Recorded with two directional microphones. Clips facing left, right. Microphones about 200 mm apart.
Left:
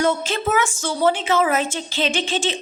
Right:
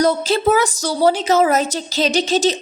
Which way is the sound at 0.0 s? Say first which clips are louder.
Right 5 dB; 35° right (ahead or behind).